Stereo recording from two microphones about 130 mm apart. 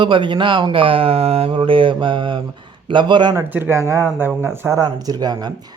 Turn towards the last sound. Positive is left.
turn(degrees=-30)  # may be behind; listen again after turning